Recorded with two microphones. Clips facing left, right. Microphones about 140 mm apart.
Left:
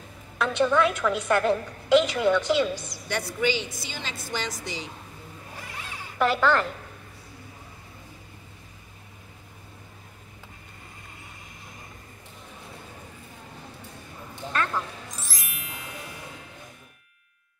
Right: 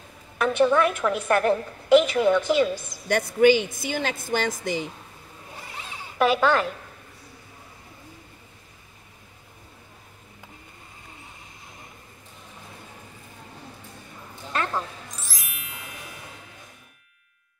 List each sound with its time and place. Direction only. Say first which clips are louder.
0.4 s a woman's voice: right 2 dB; 10° right (ahead or behind)
3.1 s a woman's voice: right 9 dB; 50° right (ahead or behind)
5.6 s zipper: right 1 dB; 20° right (ahead or behind)
15.1 s music: left 1 dB; centre (ahead or behind)